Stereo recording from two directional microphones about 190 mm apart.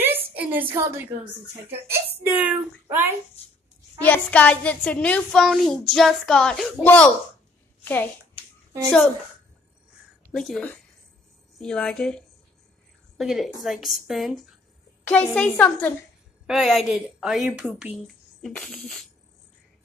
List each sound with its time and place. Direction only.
0.0 s a sound: 10° right (ahead or behind)
1.7 s speech: 15° right (ahead or behind)
4.0 s a child's voice: 10° left (ahead or behind)
10.3 s a child's voice: centre (ahead or behind)